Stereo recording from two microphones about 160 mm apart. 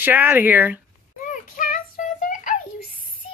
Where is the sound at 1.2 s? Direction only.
55° left (ahead or behind).